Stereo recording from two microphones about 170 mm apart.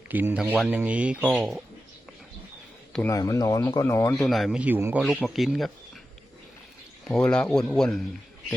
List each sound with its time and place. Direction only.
0.1 s speech: 10° right (ahead or behind)
3.1 s speech: 20° left (ahead or behind)
4.1 s speech: centre (ahead or behind)
5.0 s speech: centre (ahead or behind)
7.1 s speech: 5° left (ahead or behind)